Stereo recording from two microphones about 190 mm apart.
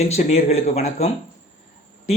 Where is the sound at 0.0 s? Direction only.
35° left (ahead or behind).